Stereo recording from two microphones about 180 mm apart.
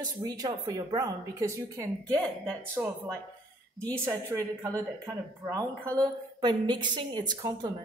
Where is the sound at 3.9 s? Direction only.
20° right (ahead or behind).